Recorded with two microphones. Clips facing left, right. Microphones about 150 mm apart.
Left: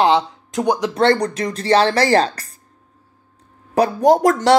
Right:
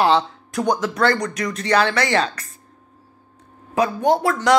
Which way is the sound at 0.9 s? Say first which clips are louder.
Left 4 dB; 30° left (ahead or behind).